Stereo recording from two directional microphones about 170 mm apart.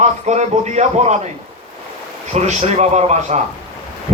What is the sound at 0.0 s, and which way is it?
Speech, 40° right (ahead or behind).